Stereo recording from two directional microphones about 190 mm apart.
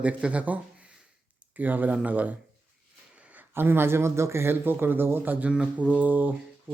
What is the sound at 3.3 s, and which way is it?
A man's voice, 10° right (ahead or behind).